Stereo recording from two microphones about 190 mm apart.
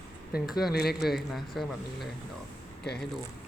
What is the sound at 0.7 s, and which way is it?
Speech, 55° left (ahead or behind).